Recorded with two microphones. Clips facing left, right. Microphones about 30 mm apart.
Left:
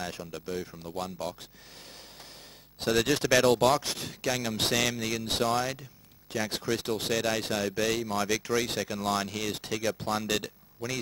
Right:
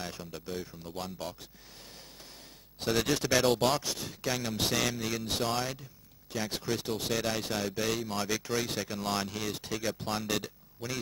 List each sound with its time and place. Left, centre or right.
0.3 s speech: centre
2.9 s speech: centre
3.8 s speech: left
4.2 s speech: centre
5.4 s speech: centre
6.3 s speech: centre